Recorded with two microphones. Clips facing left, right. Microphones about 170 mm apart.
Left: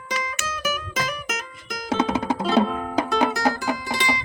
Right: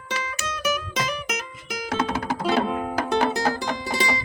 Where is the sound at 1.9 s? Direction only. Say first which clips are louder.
Left 3 dB; 20° left (ahead or behind).